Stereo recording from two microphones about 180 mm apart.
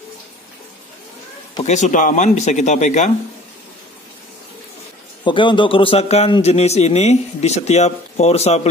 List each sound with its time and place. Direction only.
1.6 s a man's voice: 40° left (ahead or behind)
5.2 s a man's voice: 25° left (ahead or behind)